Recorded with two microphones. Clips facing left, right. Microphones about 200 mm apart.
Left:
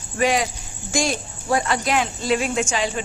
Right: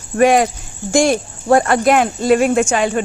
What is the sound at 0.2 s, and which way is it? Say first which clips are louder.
A woman's voice: right 8 dB; 55° right (ahead or behind).